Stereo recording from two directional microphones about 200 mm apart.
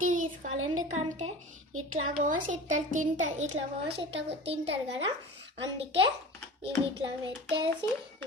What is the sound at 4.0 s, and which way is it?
Speech, 65° right (ahead or behind).